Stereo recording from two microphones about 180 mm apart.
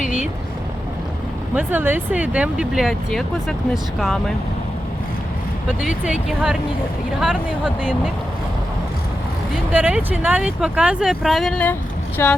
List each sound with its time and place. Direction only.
0.0 s vehicle: 45° left (ahead or behind)
1.5 s speech: 10° right (ahead or behind)
5.8 s speech: 5° right (ahead or behind)
9.7 s speech: 5° right (ahead or behind); by 12.3 s 10° left (ahead or behind)